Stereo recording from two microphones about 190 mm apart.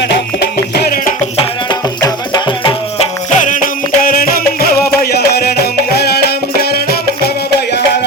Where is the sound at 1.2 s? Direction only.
25° left (ahead or behind).